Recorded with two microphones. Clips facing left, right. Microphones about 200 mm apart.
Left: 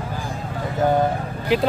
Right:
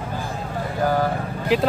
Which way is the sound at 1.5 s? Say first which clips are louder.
Even; centre (ahead or behind).